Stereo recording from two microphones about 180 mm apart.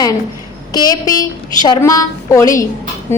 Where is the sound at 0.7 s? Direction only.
20° left (ahead or behind).